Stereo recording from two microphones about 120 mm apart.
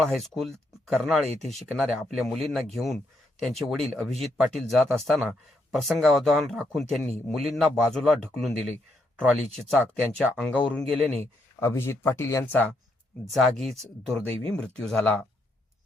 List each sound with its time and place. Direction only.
0.0 s speech: centre (ahead or behind)
13.3 s speech: centre (ahead or behind)